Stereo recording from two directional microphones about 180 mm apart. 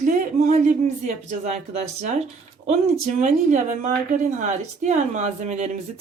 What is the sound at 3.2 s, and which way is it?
A woman's voice, 40° right (ahead or behind).